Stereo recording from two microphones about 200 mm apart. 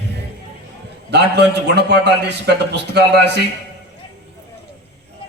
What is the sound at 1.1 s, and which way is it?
A man's voice, 55° right (ahead or behind).